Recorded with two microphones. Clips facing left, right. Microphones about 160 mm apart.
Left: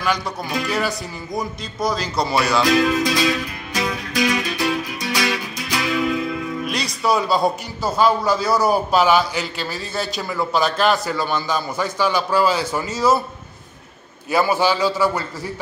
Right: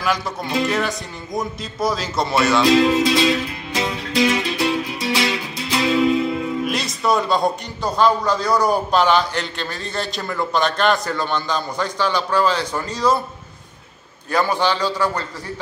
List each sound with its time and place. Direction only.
0.0 s speech: centre (ahead or behind)
2.6 s music: 25° right (ahead or behind)
6.6 s music: centre (ahead or behind)
7.0 s a man's voice: centre (ahead or behind)
14.3 s a man's voice: 10° left (ahead or behind)